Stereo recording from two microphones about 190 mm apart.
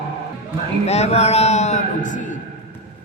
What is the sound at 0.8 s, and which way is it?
A man's voice, 35° left (ahead or behind).